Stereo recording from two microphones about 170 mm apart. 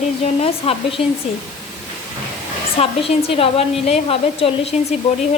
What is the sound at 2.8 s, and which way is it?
A woman's voice, 35° left (ahead or behind).